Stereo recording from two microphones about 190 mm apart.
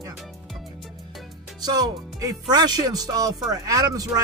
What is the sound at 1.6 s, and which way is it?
Speech, 20° right (ahead or behind).